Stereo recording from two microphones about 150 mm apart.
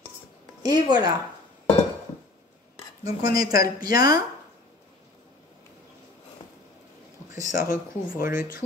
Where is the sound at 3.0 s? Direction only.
25° right (ahead or behind).